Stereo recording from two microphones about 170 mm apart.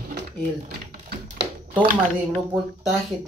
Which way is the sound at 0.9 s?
70° right (ahead or behind).